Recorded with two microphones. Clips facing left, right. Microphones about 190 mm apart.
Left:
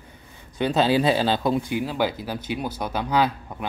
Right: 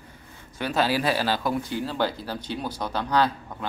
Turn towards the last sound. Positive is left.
turn(degrees=15)  # may be behind; listen again after turning